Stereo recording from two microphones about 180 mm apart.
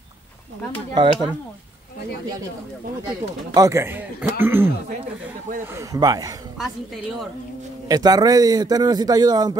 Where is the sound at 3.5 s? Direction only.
15° right (ahead or behind).